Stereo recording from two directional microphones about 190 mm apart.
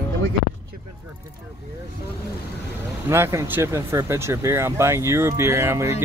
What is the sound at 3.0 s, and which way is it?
Speech, 15° right (ahead or behind).